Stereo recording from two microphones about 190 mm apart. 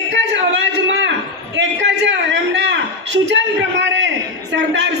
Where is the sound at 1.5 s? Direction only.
70° right (ahead or behind).